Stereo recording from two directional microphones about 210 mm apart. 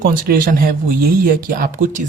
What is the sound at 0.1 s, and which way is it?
Speech, 45° right (ahead or behind).